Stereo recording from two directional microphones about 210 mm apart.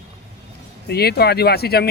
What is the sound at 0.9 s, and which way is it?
Speech, 50° left (ahead or behind).